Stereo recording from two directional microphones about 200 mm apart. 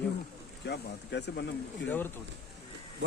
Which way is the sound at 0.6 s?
60° left (ahead or behind).